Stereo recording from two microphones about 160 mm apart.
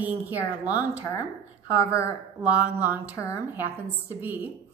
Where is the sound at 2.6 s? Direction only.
10° right (ahead or behind).